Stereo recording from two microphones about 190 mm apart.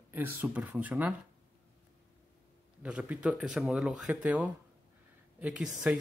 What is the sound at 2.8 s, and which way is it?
Speech, 5° right (ahead or behind).